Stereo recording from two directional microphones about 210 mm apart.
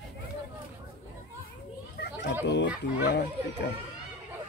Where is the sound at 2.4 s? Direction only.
55° left (ahead or behind).